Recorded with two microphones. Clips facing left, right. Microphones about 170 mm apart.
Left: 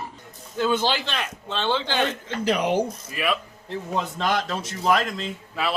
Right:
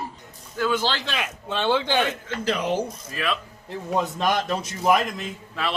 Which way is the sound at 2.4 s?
15° left (ahead or behind).